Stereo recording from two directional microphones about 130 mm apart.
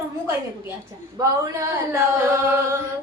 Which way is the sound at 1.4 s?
20° right (ahead or behind).